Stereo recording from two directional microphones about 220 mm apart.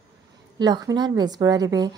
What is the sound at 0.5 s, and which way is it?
A woman's voice, 20° right (ahead or behind).